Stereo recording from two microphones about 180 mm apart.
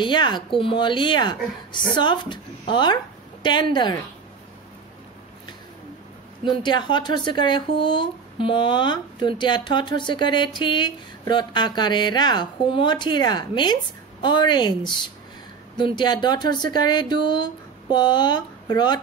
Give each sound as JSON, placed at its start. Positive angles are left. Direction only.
{"t": 0.0, "sound": "speech", "side_deg": 25}
{"t": 6.4, "sound": "speech", "side_deg": 25}